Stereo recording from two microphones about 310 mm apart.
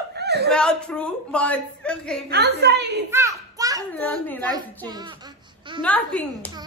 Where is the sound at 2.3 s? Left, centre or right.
Right.